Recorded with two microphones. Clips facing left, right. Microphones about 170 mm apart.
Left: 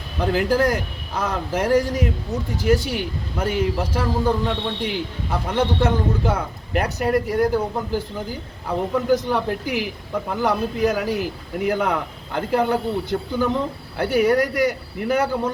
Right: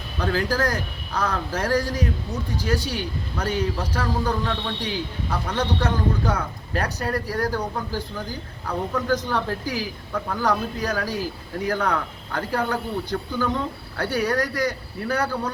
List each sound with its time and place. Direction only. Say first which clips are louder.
0.2 s speech: left 4 dB; 20° left (ahead or behind)
3.3 s speech: left 3 dB; 25° left (ahead or behind)